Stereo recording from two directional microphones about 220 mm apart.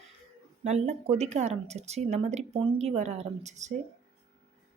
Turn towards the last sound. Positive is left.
turn(degrees=-30)  # may be behind; listen again after turning